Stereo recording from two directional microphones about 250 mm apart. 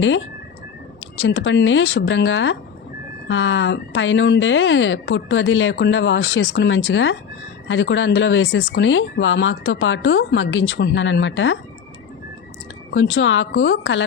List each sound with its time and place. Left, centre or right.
1.2 s a woman's voice: left
12.9 s a woman's voice: left